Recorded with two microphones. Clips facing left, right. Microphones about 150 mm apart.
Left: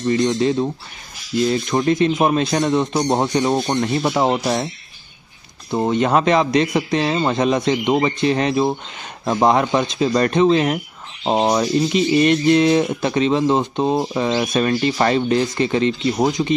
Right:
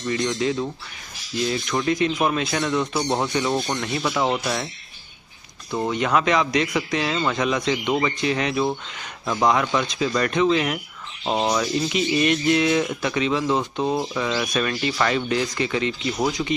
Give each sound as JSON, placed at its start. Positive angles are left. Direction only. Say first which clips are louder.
{"t": 0.0, "sound": "speech", "louder": "left 6 dB", "side_deg": 35}
{"t": 5.9, "sound": "speech", "louder": "left 5 dB", "side_deg": 35}